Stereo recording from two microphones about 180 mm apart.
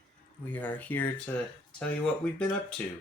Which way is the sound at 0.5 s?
10° left (ahead or behind).